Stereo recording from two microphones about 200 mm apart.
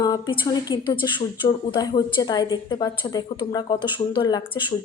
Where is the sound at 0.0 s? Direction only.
20° left (ahead or behind).